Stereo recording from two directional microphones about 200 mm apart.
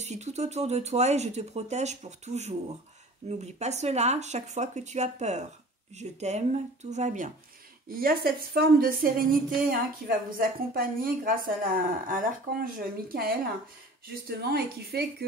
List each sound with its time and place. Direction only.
0.0 s speech: 35° right (ahead or behind)
8.0 s a woman's voice: 50° right (ahead or behind)
14.5 s a woman's voice: 50° right (ahead or behind)